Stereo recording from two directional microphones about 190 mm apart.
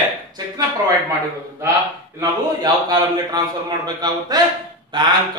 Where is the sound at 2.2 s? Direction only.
20° right (ahead or behind).